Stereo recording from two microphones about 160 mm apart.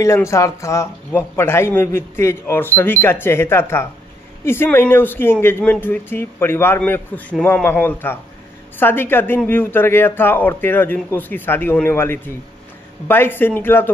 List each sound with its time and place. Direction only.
0.0 s speech: 20° left (ahead or behind)